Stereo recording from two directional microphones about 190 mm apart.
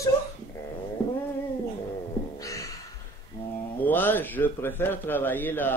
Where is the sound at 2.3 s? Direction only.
15° left (ahead or behind).